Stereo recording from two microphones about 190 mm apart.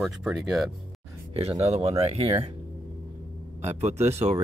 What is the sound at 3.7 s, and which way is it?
Speech, 35° right (ahead or behind).